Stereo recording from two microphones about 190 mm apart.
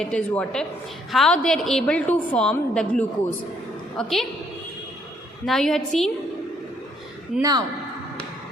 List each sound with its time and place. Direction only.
0.0 s a woman's voice: 5° left (ahead or behind)
5.5 s a woman's voice: centre (ahead or behind)
7.3 s a woman's voice: centre (ahead or behind)